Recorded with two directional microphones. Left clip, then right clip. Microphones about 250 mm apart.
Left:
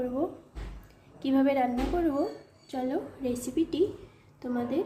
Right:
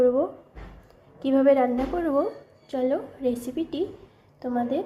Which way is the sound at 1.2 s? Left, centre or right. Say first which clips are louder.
Right 6 dB; centre.